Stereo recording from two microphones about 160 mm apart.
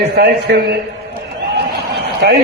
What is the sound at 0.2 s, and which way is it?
Speech, 90° right.